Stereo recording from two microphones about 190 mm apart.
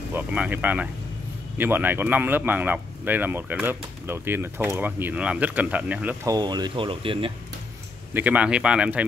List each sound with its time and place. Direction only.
0.1 s speech: 10° right (ahead or behind)
6.3 s speech: 20° right (ahead or behind)
8.1 s speech: 10° right (ahead or behind)